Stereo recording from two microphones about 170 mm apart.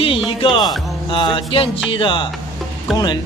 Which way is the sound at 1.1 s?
30° left (ahead or behind).